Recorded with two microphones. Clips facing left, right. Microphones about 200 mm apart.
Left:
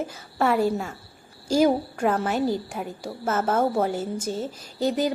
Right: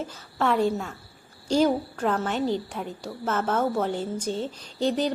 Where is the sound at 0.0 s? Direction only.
10° left (ahead or behind).